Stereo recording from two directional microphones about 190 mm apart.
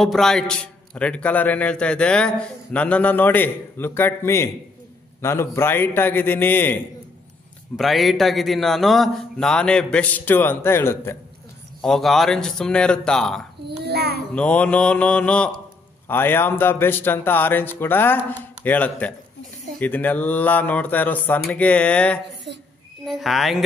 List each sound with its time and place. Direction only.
0.0 s a man's voice: centre (ahead or behind)
7.7 s a man's voice: centre (ahead or behind)
11.8 s a man's voice: centre (ahead or behind)
13.7 s a child's voice: 60° right (ahead or behind)
14.3 s a man's voice: 5° left (ahead or behind)
22.5 s a woman's voice: 60° right (ahead or behind)
23.0 s a man's voice: centre (ahead or behind)